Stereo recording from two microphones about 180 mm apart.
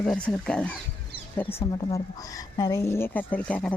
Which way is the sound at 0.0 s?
5° left (ahead or behind).